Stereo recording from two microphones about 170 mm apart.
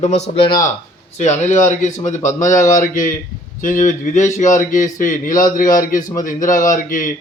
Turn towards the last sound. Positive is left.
turn(degrees=50)  # may be behind; listen again after turning